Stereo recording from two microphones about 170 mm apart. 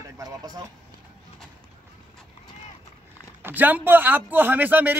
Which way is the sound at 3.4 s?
10° right (ahead or behind).